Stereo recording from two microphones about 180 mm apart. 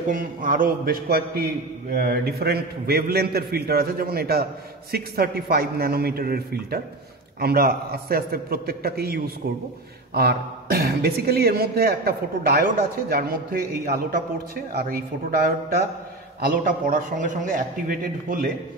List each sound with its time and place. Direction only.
0.1 s a man's voice: 50° right (ahead or behind)
16.3 s a man's voice: 50° right (ahead or behind)